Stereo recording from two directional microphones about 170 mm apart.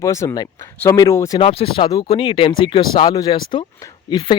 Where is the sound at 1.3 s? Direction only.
35° left (ahead or behind).